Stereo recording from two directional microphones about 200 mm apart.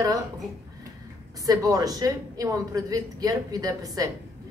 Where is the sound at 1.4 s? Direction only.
15° right (ahead or behind).